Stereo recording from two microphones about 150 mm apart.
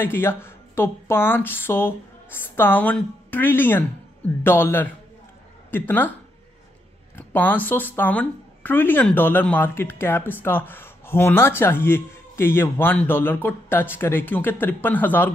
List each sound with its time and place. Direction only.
0.0 s a woman's voice: 15° left (ahead or behind)
7.2 s a woman's voice: 10° left (ahead or behind)